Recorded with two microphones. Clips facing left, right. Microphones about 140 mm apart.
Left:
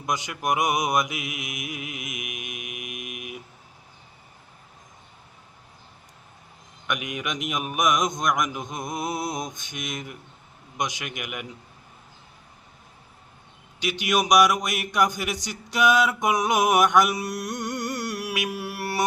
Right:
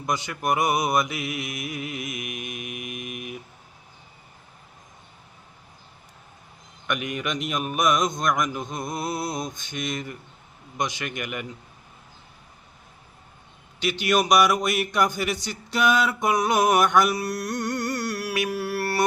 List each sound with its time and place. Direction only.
0.0 s speech: 15° left (ahead or behind)
2.5 s mantra: 5° left (ahead or behind)
6.8 s a man's voice: 10° left (ahead or behind)
13.8 s speech: 10° left (ahead or behind)
18.3 s mantra: 20° left (ahead or behind)